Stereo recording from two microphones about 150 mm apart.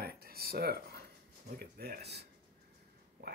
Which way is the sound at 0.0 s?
90° right.